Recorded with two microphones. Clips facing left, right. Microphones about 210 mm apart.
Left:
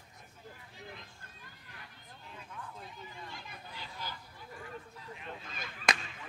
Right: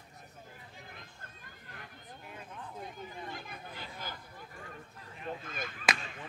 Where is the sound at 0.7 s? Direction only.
50° right (ahead or behind).